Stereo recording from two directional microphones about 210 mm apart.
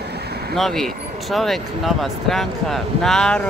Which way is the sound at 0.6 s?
Centre (ahead or behind).